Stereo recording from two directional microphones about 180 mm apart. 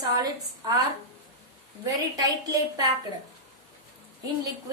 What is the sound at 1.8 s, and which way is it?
Speech, 20° right (ahead or behind).